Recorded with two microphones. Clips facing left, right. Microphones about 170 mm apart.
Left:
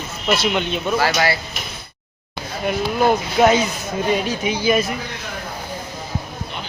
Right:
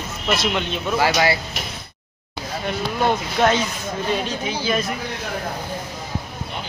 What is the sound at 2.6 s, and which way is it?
Speech, 5° left (ahead or behind).